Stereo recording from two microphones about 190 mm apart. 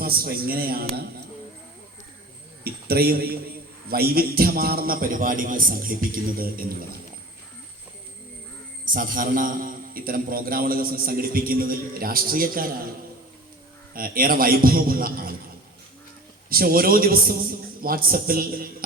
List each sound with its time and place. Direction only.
0.0 s a man's voice: 50° right (ahead or behind)
2.6 s a man's voice: 55° right (ahead or behind)
8.8 s a man's voice: 45° right (ahead or behind)
13.9 s a man's voice: 50° right (ahead or behind)
16.5 s a man's voice: 50° right (ahead or behind)